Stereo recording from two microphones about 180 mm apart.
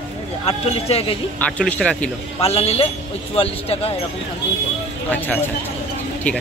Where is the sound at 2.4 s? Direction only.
35° left (ahead or behind).